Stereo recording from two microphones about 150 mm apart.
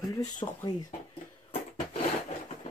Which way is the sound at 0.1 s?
25° left (ahead or behind).